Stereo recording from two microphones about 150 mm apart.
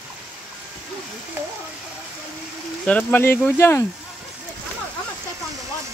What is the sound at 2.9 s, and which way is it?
Speech, 10° left (ahead or behind).